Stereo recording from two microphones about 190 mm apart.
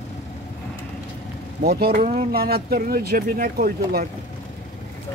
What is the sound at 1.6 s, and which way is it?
Speech, 55° right (ahead or behind).